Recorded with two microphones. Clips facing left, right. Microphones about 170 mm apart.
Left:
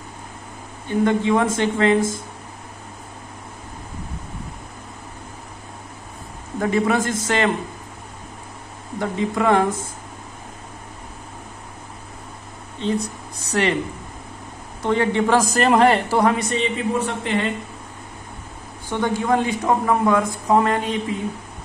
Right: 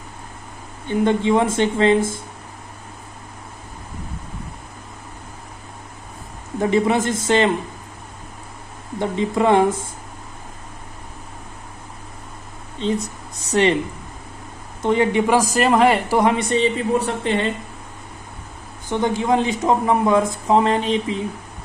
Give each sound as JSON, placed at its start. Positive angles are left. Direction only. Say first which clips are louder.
{"t": 0.8, "sound": "a man's voice", "louder": "right 1 dB", "side_deg": -25}
{"t": 6.6, "sound": "a man's voice", "louder": "right 2 dB", "side_deg": -20}
{"t": 9.0, "sound": "a man's voice", "louder": "right 2 dB", "side_deg": -25}
{"t": 13.5, "sound": "a man's voice", "louder": "right 4 dB", "side_deg": -25}
{"t": 14.8, "sound": "a man's voice", "louder": "right 2 dB", "side_deg": -15}
{"t": 16.1, "sound": "a man's voice", "louder": "right 1 dB", "side_deg": -20}
{"t": 18.9, "sound": "a man's voice", "louder": "right 1 dB", "side_deg": -20}